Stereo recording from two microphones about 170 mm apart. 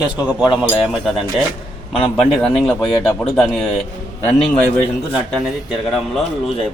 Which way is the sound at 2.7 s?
15° left (ahead or behind).